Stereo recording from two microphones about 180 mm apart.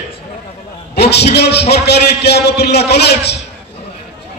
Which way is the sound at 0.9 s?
65° left (ahead or behind).